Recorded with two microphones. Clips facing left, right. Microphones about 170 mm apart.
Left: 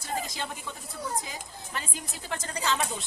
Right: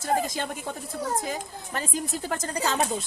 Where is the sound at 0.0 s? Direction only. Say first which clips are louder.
Right 7 dB; 50° right (ahead or behind).